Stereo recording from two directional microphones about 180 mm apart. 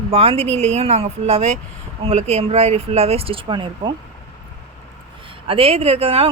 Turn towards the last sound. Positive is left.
turn(degrees=-35)  # may be behind; listen again after turning